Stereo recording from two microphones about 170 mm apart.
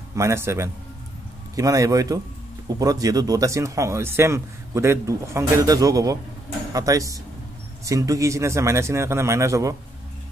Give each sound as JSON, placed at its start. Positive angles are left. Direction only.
{"t": 0.1, "sound": "speech", "side_deg": -15}